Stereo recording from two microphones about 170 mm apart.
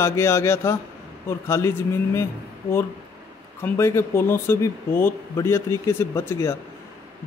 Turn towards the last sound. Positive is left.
turn(degrees=15)  # may be behind; listen again after turning